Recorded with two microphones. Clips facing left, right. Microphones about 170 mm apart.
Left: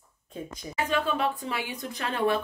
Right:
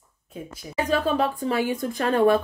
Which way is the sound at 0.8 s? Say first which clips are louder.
Right 5 dB; 40° right (ahead or behind).